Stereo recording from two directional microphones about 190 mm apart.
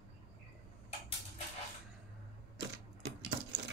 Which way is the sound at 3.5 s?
70° right (ahead or behind).